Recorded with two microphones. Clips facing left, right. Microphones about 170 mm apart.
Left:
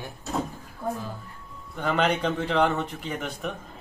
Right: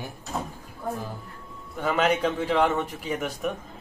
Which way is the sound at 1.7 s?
5° right (ahead or behind).